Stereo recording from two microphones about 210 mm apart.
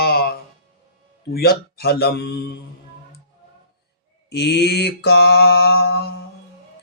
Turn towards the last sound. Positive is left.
turn(degrees=50)  # may be behind; listen again after turning